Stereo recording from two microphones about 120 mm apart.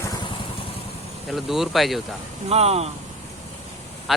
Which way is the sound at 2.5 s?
60° right (ahead or behind).